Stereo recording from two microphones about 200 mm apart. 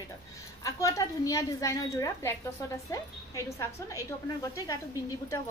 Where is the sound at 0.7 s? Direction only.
15° left (ahead or behind).